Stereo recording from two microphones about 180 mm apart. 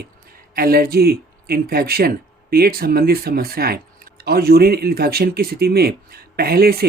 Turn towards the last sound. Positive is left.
turn(degrees=-60)  # may be behind; listen again after turning